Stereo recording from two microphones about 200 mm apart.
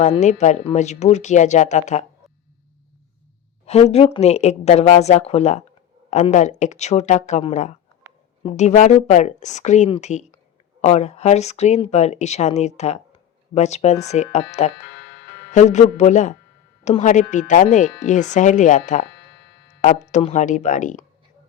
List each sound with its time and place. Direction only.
0.2 s speech: 35° left (ahead or behind)
3.7 s speech: 30° left (ahead or behind)
15.0 s music: 65° left (ahead or behind)
15.5 s speech: 35° left (ahead or behind)